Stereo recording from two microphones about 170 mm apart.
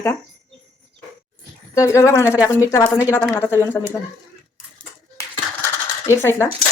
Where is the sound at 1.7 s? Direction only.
15° left (ahead or behind).